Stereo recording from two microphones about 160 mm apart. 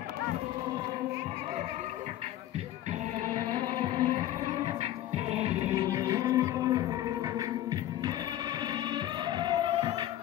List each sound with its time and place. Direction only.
3.5 s music: 25° right (ahead or behind)
5.1 s music: 40° right (ahead or behind)
5.8 s music: 20° right (ahead or behind)